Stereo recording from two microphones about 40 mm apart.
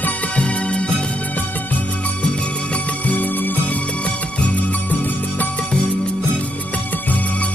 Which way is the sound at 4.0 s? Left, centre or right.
Left.